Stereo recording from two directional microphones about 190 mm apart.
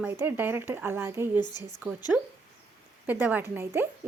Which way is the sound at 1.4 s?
20° left (ahead or behind).